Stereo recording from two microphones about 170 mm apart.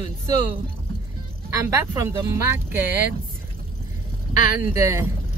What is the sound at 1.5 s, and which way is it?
Speech, 15° right (ahead or behind).